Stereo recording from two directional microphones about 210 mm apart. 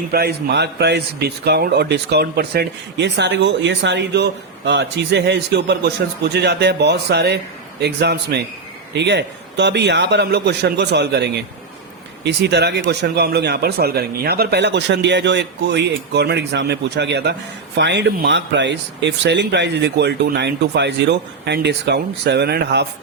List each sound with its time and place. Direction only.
0.1 s a man's voice: 50° right (ahead or behind)